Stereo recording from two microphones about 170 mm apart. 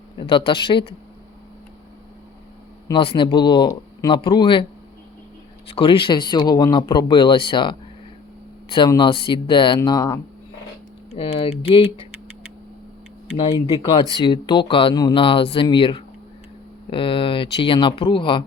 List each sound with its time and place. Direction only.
0.2 s speech: 30° left (ahead or behind)
2.8 s speech: 30° left (ahead or behind)
5.6 s speech: 35° left (ahead or behind)
11.2 s speech: 35° left (ahead or behind)
13.3 s speech: 30° left (ahead or behind)